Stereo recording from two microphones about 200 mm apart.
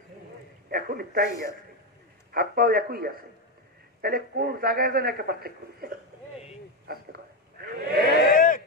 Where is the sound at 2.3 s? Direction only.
50° right (ahead or behind).